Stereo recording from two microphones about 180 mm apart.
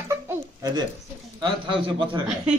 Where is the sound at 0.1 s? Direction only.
20° right (ahead or behind).